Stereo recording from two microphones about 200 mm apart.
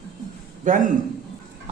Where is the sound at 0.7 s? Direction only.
40° right (ahead or behind).